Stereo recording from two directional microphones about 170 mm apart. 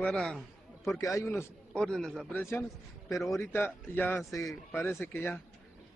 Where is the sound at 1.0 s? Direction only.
15° left (ahead or behind).